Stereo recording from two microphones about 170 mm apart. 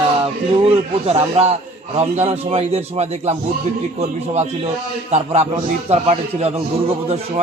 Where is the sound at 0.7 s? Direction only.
35° right (ahead or behind).